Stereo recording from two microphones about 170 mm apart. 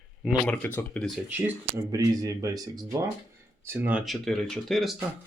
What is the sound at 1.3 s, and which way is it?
Speech, 10° right (ahead or behind).